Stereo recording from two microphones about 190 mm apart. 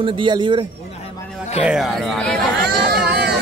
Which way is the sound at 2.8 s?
55° right (ahead or behind).